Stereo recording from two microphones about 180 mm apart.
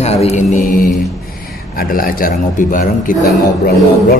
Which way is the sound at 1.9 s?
50° left (ahead or behind).